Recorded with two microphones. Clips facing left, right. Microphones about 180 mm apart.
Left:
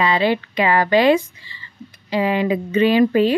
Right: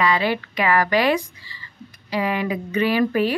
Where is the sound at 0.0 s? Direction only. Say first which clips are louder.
Left 3 dB; 25° left (ahead or behind).